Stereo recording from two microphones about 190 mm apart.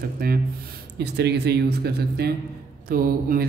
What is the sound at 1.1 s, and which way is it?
A man's voice, 60° right (ahead or behind).